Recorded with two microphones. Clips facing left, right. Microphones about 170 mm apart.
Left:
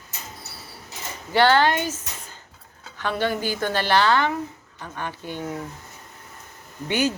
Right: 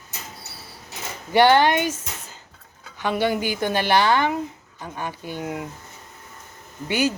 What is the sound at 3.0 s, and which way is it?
Speech, 15° right (ahead or behind).